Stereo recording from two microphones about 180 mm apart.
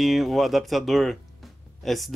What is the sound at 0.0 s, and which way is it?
Speech, centre (ahead or behind).